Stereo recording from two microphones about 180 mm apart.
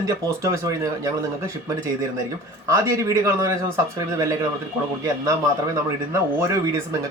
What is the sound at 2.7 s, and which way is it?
Speech, 15° right (ahead or behind).